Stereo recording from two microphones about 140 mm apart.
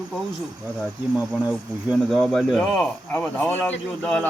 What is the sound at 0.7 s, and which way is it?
A man's voice, centre (ahead or behind).